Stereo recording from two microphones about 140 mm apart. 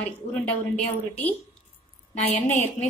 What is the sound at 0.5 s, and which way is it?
Speech, 10° left (ahead or behind).